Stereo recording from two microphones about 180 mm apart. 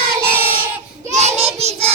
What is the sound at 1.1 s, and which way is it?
Child singing, 35° right (ahead or behind).